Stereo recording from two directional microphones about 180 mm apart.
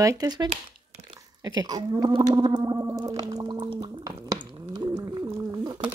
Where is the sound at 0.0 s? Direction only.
20° right (ahead or behind).